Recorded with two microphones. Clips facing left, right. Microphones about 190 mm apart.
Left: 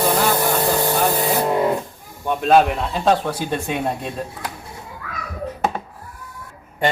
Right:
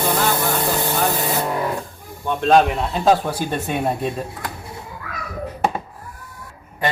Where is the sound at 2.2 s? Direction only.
5° left (ahead or behind).